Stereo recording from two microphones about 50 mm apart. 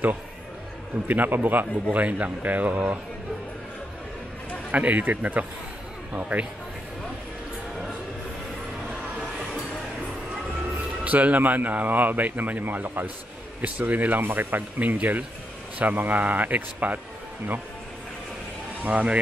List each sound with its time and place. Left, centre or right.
1.0 s speech: right
1.9 s speech: right
4.6 s speech: right
11.1 s speech: right
18.9 s speech: right